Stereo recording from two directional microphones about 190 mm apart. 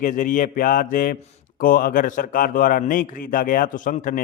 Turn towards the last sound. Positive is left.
turn(degrees=45)  # may be behind; listen again after turning